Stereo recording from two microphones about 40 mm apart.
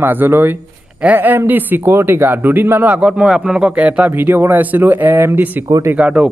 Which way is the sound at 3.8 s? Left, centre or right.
Right.